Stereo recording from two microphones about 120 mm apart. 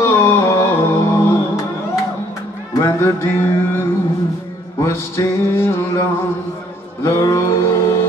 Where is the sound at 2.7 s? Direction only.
25° left (ahead or behind).